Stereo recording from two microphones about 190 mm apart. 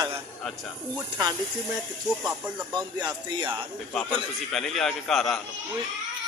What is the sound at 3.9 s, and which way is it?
A man's voice, 5° left (ahead or behind).